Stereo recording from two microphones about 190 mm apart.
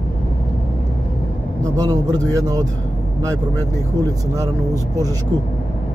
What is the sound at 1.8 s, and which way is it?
Speech, 20° right (ahead or behind).